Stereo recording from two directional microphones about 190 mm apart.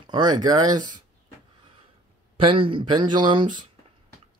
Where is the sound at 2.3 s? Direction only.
30° right (ahead or behind).